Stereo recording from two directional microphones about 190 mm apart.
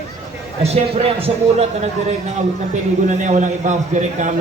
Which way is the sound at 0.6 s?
35° right (ahead or behind).